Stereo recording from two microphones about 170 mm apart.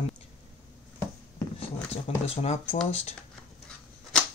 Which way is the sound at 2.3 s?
35° left (ahead or behind).